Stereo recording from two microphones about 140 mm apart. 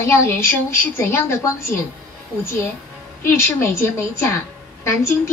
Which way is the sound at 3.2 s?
20° left (ahead or behind).